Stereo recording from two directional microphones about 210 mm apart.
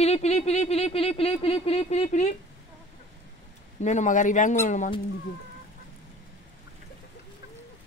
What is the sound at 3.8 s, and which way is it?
Speech, 35° left (ahead or behind).